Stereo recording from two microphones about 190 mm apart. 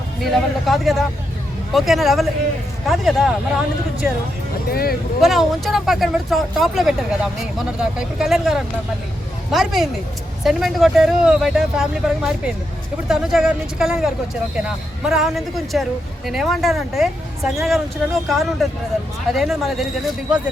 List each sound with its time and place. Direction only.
0.2 s speech: centre (ahead or behind)
4.7 s speech: 55° left (ahead or behind)
5.2 s speech: centre (ahead or behind)